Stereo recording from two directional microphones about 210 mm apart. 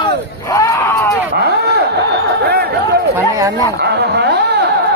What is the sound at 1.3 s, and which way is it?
Speech, 50° right (ahead or behind).